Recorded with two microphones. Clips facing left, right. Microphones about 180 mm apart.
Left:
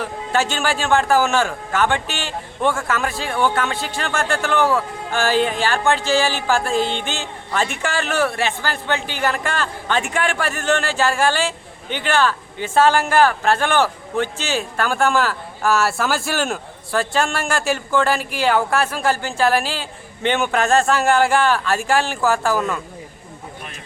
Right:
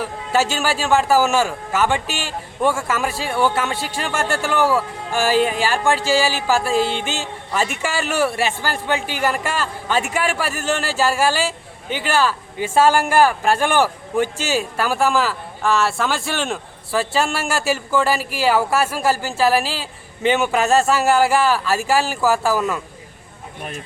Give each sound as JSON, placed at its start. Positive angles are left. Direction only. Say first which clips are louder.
{"t": 0.0, "sound": "a man's voice", "louder": "right 1 dB", "side_deg": -5}